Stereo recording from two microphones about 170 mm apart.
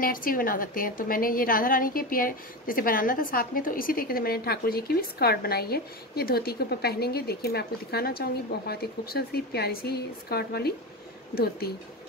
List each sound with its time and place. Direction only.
0.0 s a woman's voice: 55° left (ahead or behind)